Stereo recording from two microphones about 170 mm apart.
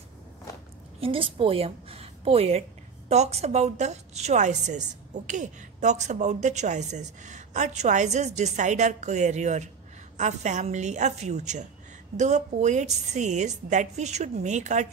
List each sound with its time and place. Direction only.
1.0 s a woman's voice: 30° right (ahead or behind)